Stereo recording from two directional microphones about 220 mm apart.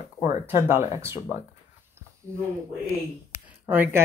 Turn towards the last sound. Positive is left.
turn(degrees=-10)  # may be behind; listen again after turning